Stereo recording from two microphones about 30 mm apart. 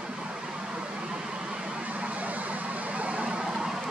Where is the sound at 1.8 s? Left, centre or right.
Right.